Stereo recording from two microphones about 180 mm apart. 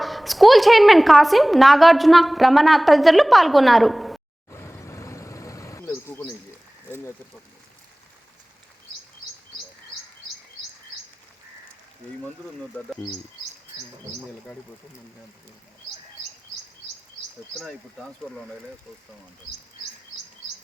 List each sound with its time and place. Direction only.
0.0 s a woman's voice: centre (ahead or behind)
4.5 s vehicle: 15° left (ahead or behind)
12.7 s a woman's voice: 5° left (ahead or behind)
17.6 s a woman's voice: centre (ahead or behind)